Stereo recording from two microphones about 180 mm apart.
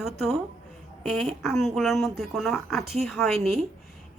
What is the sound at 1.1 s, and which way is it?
A woman's voice, centre (ahead or behind).